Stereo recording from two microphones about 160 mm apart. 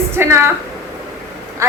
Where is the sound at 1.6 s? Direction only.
20° right (ahead or behind).